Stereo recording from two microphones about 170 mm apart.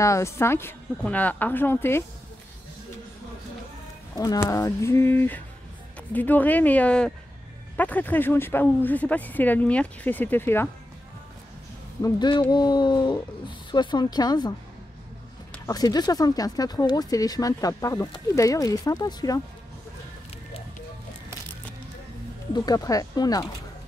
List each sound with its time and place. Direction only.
0.0 s speech: 15° left (ahead or behind)
4.1 s speech: 20° left (ahead or behind)
12.0 s speech: 25° left (ahead or behind)
15.7 s speech: 25° left (ahead or behind)
22.5 s speech: 20° left (ahead or behind)